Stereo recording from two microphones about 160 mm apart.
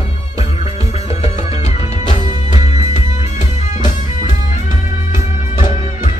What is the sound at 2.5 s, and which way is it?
Music, 50° left (ahead or behind).